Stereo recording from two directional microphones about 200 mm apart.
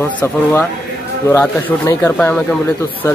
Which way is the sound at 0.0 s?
10° left (ahead or behind).